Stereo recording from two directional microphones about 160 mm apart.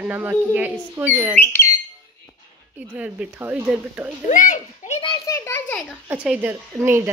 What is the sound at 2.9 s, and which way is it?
A woman's voice, 10° right (ahead or behind).